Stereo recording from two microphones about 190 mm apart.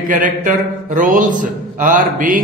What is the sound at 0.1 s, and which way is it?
Speech, 45° right (ahead or behind).